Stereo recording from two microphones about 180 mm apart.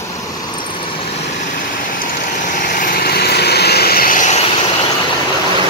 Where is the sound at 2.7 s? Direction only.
55° left (ahead or behind).